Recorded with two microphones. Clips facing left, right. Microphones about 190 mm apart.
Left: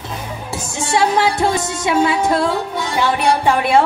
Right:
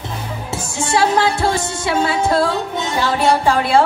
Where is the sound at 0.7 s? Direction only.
20° left (ahead or behind).